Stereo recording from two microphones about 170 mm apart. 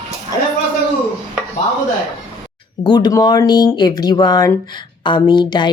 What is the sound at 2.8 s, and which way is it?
A woman's voice, 25° left (ahead or behind).